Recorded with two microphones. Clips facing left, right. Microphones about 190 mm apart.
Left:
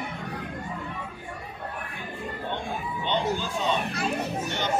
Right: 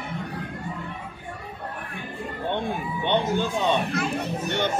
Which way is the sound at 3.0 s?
60° right (ahead or behind).